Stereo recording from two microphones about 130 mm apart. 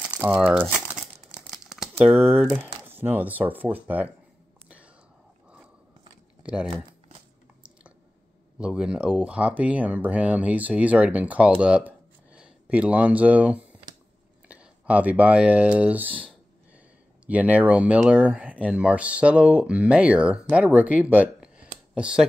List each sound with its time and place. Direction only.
0.0 s speech: 10° right (ahead or behind)
0.9 s crumpling: 5° right (ahead or behind)
2.0 s speech: 15° right (ahead or behind)
6.4 s speech: 10° right (ahead or behind)
8.5 s speech: 5° right (ahead or behind)
11.6 s a sound: 10° right (ahead or behind)
14.5 s speech: 10° right (ahead or behind)
17.3 s speech: 10° right (ahead or behind)